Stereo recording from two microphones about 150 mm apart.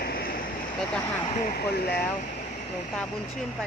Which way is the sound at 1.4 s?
90° left.